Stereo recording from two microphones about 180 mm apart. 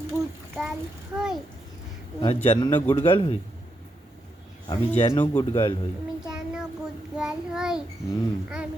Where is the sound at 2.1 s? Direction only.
30° left (ahead or behind).